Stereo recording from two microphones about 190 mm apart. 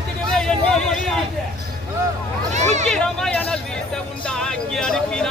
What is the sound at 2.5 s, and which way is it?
Speech, 40° right (ahead or behind).